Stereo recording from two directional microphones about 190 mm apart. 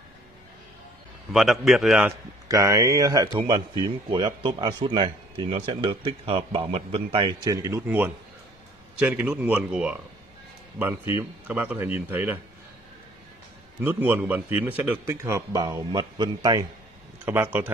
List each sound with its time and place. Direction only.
1.3 s a man's voice: centre (ahead or behind)
2.4 s a man's voice: 15° right (ahead or behind)
13.7 s a man's voice: 10° right (ahead or behind)